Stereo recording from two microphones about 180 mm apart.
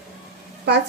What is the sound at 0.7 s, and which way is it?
Speech, 70° right (ahead or behind).